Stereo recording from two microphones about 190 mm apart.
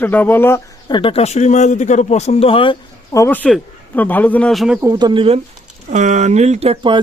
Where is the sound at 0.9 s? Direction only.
25° left (ahead or behind); by 4.8 s centre (ahead or behind).